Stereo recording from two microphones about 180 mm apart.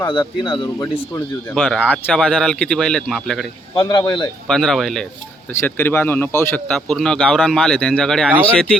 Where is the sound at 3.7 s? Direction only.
25° left (ahead or behind).